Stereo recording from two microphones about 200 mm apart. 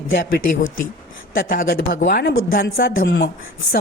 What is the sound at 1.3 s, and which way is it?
Speech, 45° left (ahead or behind).